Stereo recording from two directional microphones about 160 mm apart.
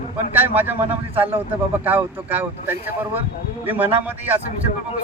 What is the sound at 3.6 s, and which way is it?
Speech, 10° right (ahead or behind).